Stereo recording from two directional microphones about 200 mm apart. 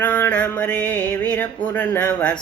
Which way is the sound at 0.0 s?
10° left (ahead or behind).